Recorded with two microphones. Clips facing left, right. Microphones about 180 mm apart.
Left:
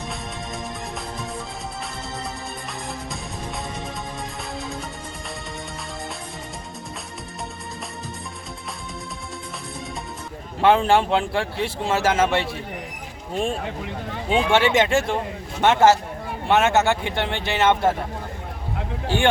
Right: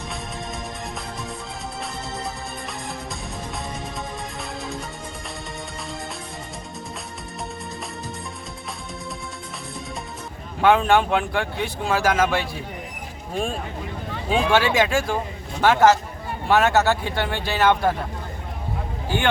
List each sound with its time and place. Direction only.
10.6 s speech: 30° left (ahead or behind)
14.3 s speech: 25° left (ahead or behind)